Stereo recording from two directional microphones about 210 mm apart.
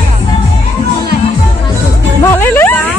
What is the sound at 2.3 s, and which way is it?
Speech, 10° left (ahead or behind).